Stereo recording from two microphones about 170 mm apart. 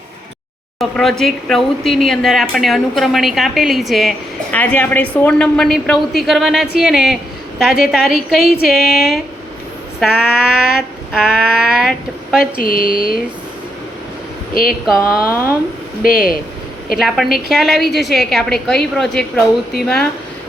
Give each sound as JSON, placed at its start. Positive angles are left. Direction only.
{"t": 0.8, "sound": "a woman's voice", "side_deg": 0}
{"t": 12.4, "sound": "speech", "side_deg": 60}
{"t": 14.5, "sound": "speech", "side_deg": 60}
{"t": 14.9, "sound": "a woman's voice", "side_deg": 15}
{"t": 16.0, "sound": "speech", "side_deg": 60}
{"t": 17.0, "sound": "a woman's voice", "side_deg": 0}